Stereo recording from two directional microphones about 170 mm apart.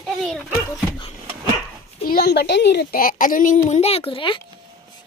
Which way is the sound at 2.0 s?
65° left (ahead or behind).